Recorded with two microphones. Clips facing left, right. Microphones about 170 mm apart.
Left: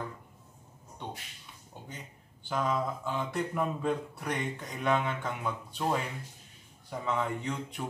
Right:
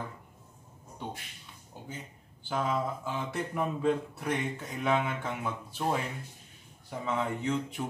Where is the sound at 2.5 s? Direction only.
5° right (ahead or behind).